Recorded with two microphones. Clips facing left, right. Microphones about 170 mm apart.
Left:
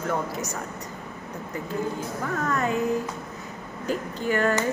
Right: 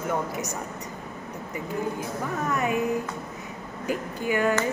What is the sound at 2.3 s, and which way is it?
Speech, 15° right (ahead or behind).